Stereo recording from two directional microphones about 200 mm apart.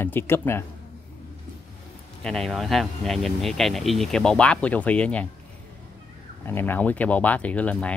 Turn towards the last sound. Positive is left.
turn(degrees=5)  # may be behind; listen again after turning